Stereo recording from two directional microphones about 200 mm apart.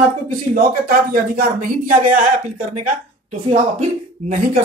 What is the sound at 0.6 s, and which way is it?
Speech, 45° right (ahead or behind).